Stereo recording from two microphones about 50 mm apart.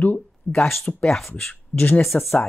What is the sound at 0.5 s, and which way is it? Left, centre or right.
Speech, left.